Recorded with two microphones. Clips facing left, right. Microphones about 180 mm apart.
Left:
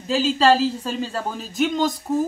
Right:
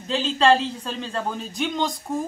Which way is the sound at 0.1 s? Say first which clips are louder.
Left 2 dB; 5° left (ahead or behind).